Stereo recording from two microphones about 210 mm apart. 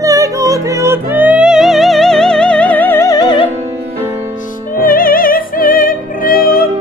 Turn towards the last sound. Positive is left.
turn(degrees=45)  # may be behind; listen again after turning